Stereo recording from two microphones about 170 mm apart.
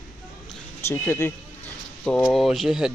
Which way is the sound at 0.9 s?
15° left (ahead or behind).